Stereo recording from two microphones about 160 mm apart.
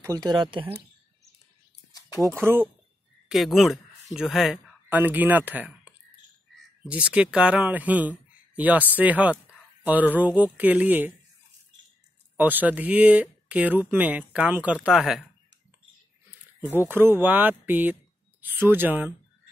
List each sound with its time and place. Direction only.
0.0 s speech: 25° right (ahead or behind)
1.9 s a sound: 20° left (ahead or behind)
2.1 s speech: 15° right (ahead or behind)
3.3 s speech: centre (ahead or behind)
12.4 s speech: 10° right (ahead or behind)
16.7 s speech: 15° right (ahead or behind)